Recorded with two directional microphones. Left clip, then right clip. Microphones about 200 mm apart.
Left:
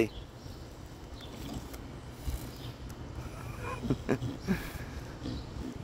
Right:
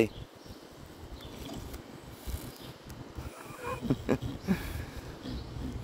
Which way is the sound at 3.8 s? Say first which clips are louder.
Right 1 dB; 15° right (ahead or behind).